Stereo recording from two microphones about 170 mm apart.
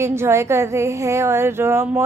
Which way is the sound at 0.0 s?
15° right (ahead or behind).